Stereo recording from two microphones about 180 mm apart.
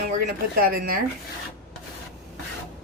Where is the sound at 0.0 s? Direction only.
50° right (ahead or behind).